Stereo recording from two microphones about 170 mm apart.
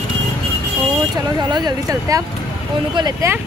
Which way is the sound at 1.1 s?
25° right (ahead or behind).